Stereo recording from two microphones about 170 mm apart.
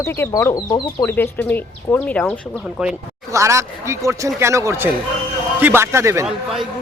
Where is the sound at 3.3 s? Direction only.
15° right (ahead or behind).